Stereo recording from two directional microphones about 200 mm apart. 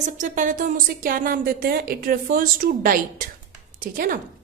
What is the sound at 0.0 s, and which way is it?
A woman's voice, 40° right (ahead or behind).